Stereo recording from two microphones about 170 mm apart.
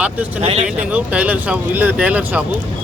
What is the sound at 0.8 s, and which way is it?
Speech, 10° right (ahead or behind).